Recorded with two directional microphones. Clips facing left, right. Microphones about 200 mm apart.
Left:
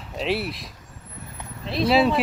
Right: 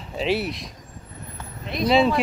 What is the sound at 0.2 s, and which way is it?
Speech, centre (ahead or behind).